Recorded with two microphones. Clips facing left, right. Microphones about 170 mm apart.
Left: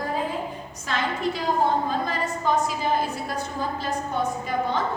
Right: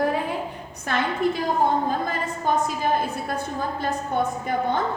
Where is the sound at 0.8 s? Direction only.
55° right (ahead or behind).